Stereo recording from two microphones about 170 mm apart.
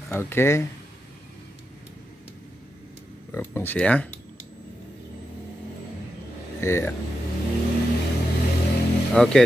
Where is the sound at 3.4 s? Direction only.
15° left (ahead or behind).